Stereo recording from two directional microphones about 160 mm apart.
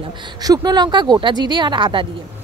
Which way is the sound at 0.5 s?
25° right (ahead or behind).